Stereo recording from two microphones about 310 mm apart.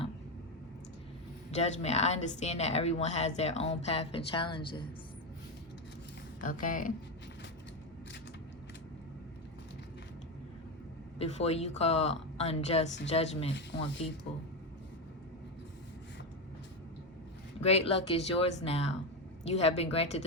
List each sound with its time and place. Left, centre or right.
1.5 s speech: left
6.4 s speech: left
11.2 s speech: centre
13.5 s speech: left
14.3 s speech: centre
17.6 s speech: centre